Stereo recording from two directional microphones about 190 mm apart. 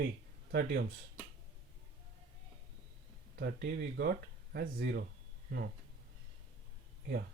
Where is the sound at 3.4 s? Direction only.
65° right (ahead or behind).